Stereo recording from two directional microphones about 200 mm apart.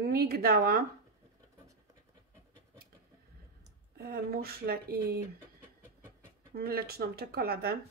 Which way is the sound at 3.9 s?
50° right (ahead or behind).